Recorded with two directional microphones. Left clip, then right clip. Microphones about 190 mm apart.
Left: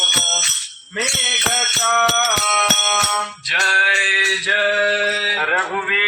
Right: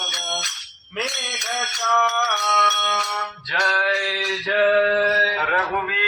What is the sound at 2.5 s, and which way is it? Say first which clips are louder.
Music: right 2 dB; 30° left (ahead or behind).